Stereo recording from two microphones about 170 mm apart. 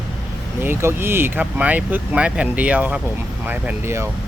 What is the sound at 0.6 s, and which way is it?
Speech, 15° right (ahead or behind).